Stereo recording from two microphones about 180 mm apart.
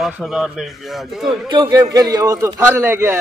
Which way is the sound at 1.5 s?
25° right (ahead or behind).